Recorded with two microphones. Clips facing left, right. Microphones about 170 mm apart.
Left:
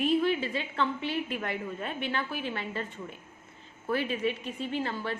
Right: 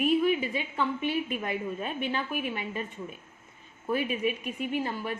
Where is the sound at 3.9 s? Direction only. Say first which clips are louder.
Right 1 dB; 15° right (ahead or behind).